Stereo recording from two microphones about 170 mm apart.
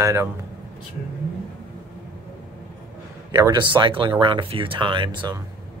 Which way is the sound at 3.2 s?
25° right (ahead or behind).